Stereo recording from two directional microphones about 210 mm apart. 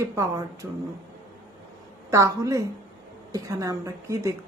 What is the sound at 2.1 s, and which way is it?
Speech, 15° right (ahead or behind).